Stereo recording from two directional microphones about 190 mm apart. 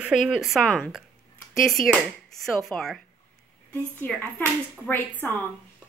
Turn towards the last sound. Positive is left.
turn(degrees=10)  # may be behind; listen again after turning